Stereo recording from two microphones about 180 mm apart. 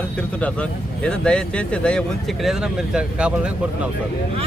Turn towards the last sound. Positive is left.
turn(degrees=-5)  # may be behind; listen again after turning